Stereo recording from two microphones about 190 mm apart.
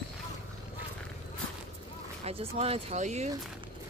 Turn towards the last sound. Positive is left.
turn(degrees=-35)  # may be behind; listen again after turning